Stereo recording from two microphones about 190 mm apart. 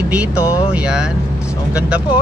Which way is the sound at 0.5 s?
5° right (ahead or behind).